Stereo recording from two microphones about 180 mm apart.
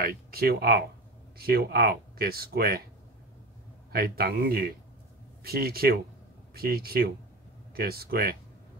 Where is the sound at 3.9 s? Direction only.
60° right (ahead or behind).